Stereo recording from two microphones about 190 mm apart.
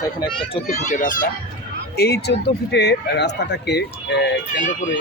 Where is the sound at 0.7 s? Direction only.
45° left (ahead or behind).